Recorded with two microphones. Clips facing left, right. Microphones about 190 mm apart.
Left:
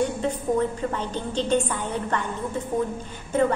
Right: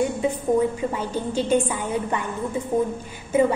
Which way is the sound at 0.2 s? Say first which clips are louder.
Right 3 dB; 10° right (ahead or behind).